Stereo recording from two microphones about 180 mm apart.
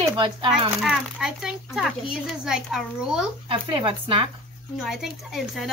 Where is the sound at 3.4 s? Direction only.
30° right (ahead or behind).